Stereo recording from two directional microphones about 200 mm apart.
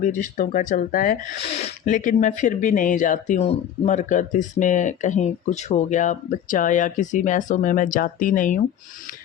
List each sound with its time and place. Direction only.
0.0 s speech: 40° left (ahead or behind)